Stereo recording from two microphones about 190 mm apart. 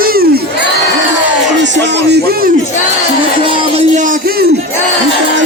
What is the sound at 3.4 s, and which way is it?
Music, 35° right (ahead or behind).